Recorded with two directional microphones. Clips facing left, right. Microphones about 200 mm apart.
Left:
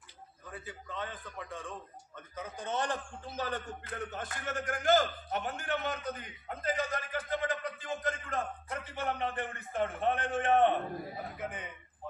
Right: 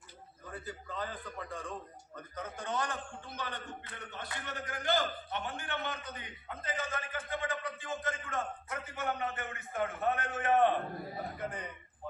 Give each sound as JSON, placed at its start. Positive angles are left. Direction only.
{"t": 0.5, "sound": "a man's voice", "side_deg": 0}
{"t": 2.6, "sound": "a man's voice", "side_deg": 25}
{"t": 11.3, "sound": "a man's voice", "side_deg": 5}